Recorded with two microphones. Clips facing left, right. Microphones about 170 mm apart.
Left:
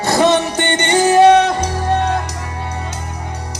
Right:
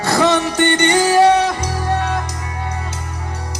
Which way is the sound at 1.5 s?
30° left (ahead or behind).